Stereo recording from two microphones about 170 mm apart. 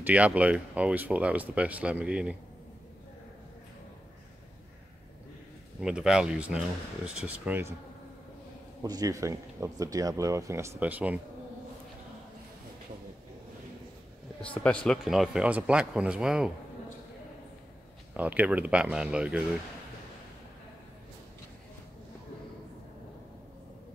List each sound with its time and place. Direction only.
0.0 s speech: 10° right (ahead or behind)
5.8 s speech: 5° right (ahead or behind)
8.8 s speech: 20° right (ahead or behind)
14.4 s speech: 5° left (ahead or behind)
18.1 s speech: 10° right (ahead or behind)